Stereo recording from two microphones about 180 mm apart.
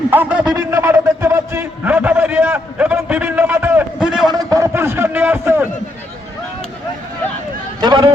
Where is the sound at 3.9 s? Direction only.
5° right (ahead or behind).